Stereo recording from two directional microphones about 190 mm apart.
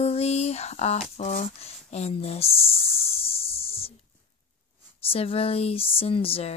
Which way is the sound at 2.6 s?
30° left (ahead or behind).